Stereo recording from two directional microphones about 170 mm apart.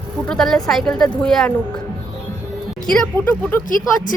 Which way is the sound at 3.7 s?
55° left (ahead or behind).